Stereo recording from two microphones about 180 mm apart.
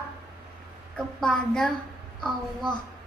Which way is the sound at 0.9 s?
5° left (ahead or behind).